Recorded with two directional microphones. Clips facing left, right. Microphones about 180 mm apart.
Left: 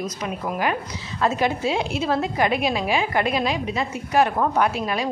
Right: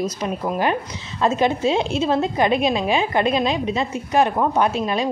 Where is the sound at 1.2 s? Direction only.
20° right (ahead or behind).